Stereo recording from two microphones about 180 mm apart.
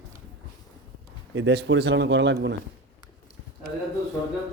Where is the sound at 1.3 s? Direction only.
85° right.